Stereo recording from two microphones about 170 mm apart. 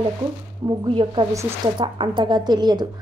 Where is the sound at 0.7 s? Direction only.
30° right (ahead or behind).